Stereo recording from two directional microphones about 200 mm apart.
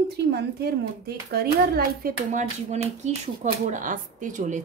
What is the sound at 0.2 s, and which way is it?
A woman's voice, 55° right (ahead or behind).